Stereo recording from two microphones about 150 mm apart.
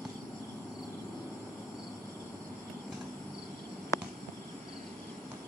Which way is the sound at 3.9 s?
20° left (ahead or behind).